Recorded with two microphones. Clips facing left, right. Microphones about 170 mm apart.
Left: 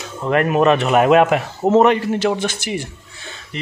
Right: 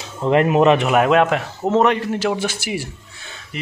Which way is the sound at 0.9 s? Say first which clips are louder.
Left 2 dB; 5° left (ahead or behind).